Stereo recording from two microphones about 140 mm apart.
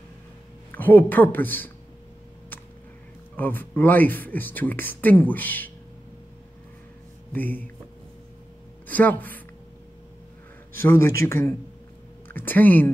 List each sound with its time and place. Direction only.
0.7 s speech: 15° left (ahead or behind)
3.3 s speech: 15° left (ahead or behind)
7.3 s speech: 15° left (ahead or behind)
8.8 s speech: 10° left (ahead or behind)
10.8 s speech: 20° left (ahead or behind)